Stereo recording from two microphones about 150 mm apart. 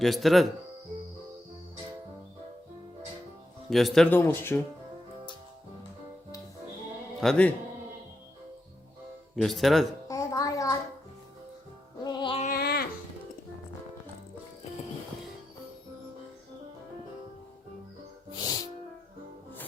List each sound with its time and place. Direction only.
0.0 s speech: centre (ahead or behind)
3.7 s speech: centre (ahead or behind)
4.1 s speech: 15° left (ahead or behind)
7.2 s speech: 5° left (ahead or behind)
9.3 s speech: centre (ahead or behind)
10.1 s a sound: 25° left (ahead or behind)
12.0 s music: 35° left (ahead or behind)
12.4 s a sound: 80° left
18.3 s music: 25° left (ahead or behind)